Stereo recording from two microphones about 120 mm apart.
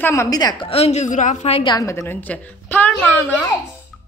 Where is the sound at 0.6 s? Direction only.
60° left (ahead or behind).